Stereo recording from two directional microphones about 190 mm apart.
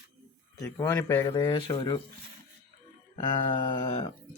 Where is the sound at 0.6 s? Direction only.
10° left (ahead or behind).